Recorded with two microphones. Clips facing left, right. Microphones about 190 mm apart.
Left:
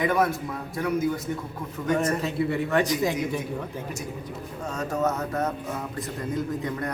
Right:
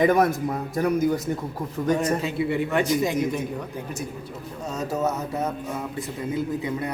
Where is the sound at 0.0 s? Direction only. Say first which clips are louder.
Right 4 dB; 45° right (ahead or behind).